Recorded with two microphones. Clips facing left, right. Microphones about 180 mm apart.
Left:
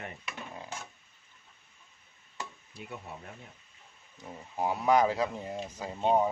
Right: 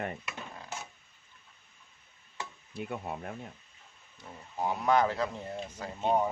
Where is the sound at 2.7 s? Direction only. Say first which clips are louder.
Right 7 dB; 55° right (ahead or behind).